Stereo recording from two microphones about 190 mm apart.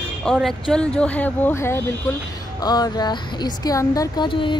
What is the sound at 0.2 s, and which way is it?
Speech, centre (ahead or behind).